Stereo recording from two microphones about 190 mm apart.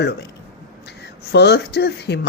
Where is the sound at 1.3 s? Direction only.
60° left (ahead or behind).